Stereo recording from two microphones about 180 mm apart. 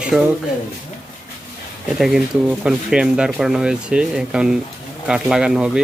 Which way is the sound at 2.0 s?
5° right (ahead or behind).